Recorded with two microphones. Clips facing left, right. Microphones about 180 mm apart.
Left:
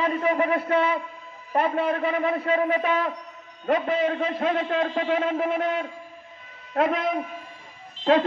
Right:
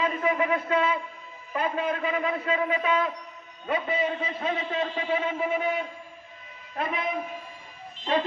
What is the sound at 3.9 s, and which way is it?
A man's voice, 50° left (ahead or behind).